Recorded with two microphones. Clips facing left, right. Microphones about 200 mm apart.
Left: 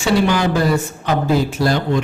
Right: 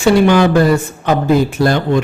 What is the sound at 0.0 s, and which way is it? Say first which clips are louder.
Speech: right 6 dB; 60° right (ahead or behind).